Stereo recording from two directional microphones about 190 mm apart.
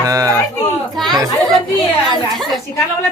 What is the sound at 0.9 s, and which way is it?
Chatter, centre (ahead or behind).